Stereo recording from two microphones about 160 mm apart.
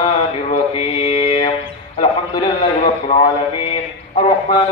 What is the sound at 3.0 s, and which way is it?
Mantra, 45° left (ahead or behind).